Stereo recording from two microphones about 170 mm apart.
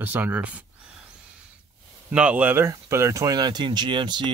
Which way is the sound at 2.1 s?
5° right (ahead or behind).